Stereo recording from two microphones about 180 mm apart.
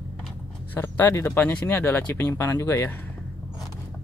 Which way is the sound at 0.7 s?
10° left (ahead or behind).